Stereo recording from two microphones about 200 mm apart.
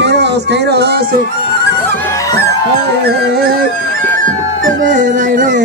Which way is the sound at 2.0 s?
15° left (ahead or behind).